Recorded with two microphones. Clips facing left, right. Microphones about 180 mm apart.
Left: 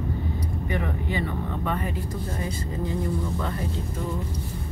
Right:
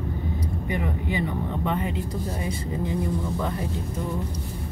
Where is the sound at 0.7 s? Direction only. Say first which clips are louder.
Right 1 dB; 15° right (ahead or behind).